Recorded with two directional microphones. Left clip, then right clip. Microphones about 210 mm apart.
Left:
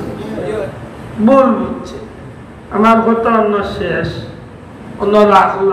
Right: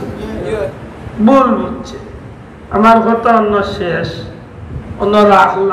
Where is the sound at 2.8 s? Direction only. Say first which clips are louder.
Right 2 dB; 55° right (ahead or behind).